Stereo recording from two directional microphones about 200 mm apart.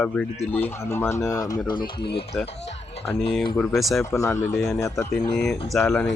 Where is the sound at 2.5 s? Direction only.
30° left (ahead or behind).